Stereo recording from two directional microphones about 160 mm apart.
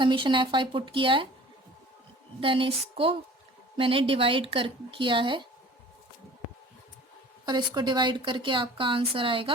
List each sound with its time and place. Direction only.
0.0 s speech: 30° right (ahead or behind)
2.4 s speech: 35° right (ahead or behind)
7.4 s speech: 25° right (ahead or behind)